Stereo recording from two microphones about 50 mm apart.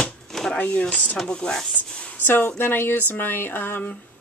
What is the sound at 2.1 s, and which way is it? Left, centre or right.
A woman's voice, left.